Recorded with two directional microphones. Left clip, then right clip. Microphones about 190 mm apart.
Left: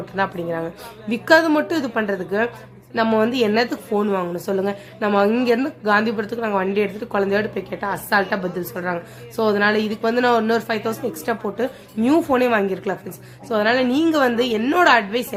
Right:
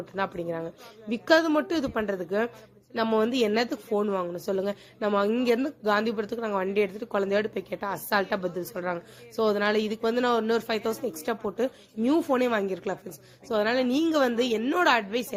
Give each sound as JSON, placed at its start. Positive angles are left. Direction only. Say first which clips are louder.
{"t": 0.2, "sound": "a woman's voice", "louder": "left 7 dB", "side_deg": -30}